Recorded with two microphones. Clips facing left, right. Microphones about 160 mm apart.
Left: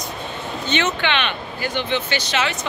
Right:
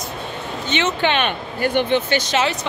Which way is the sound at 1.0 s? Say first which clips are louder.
Right 3 dB; 40° right (ahead or behind).